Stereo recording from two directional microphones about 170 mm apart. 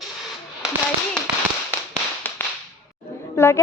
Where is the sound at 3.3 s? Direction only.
15° left (ahead or behind).